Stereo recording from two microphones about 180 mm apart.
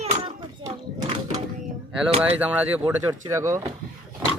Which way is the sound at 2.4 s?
10° right (ahead or behind).